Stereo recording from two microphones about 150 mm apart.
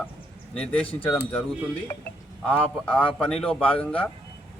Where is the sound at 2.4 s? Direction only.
10° left (ahead or behind).